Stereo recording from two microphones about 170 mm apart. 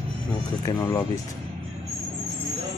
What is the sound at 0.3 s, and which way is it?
Speech, 20° left (ahead or behind).